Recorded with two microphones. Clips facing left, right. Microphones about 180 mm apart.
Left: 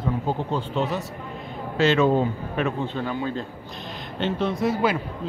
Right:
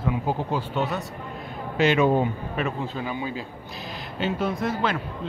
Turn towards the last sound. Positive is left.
turn(degrees=5)  # may be behind; listen again after turning